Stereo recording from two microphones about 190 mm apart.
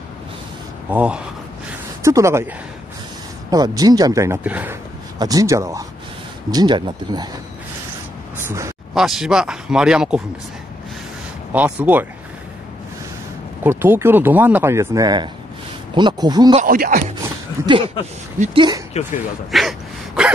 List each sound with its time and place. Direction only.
0.8 s speech: 5° right (ahead or behind); by 7.2 s 20° right (ahead or behind)
8.4 s speech: 15° right (ahead or behind)
8.9 s speech: centre (ahead or behind)
11.5 s speech: 10° right (ahead or behind)
13.7 s speech: 10° right (ahead or behind)
16.5 s speech: 50° right (ahead or behind)
17.6 s speech: 25° right (ahead or behind)
19.5 s speech: centre (ahead or behind)